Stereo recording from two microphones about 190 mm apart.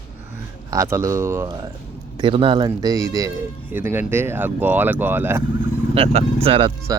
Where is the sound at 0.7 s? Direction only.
15° right (ahead or behind).